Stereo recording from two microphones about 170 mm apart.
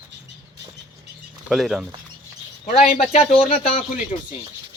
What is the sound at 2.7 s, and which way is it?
A man's voice, 35° left (ahead or behind).